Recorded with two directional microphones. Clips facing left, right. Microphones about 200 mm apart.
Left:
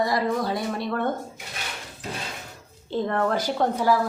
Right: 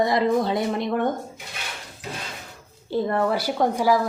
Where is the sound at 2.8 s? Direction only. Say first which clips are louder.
Right 2 dB; 10° right (ahead or behind).